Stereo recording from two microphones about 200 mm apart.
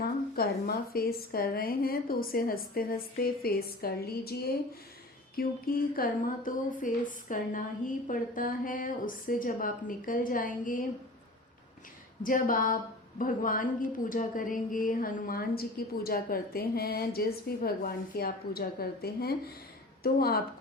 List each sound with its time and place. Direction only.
0.4 s a sound: 50° left (ahead or behind)
0.9 s speech: 50° left (ahead or behind)
12.2 s speech: 45° left (ahead or behind)